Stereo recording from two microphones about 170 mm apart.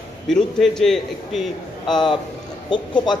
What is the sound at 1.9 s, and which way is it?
A man's voice, 25° left (ahead or behind).